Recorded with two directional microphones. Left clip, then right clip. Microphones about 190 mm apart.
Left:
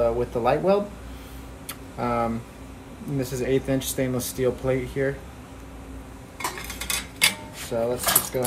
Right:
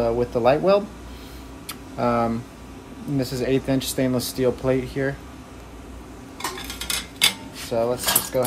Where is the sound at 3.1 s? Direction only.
50° right (ahead or behind).